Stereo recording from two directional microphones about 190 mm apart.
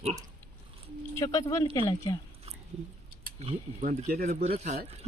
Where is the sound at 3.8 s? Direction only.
45° right (ahead or behind).